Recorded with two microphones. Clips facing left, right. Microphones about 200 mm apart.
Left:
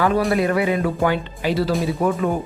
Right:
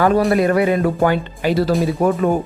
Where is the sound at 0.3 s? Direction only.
40° right (ahead or behind).